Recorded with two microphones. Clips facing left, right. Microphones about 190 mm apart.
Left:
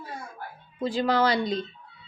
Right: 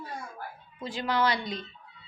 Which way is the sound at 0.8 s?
35° left (ahead or behind).